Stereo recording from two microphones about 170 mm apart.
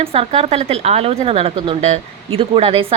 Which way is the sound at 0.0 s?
35° right (ahead or behind).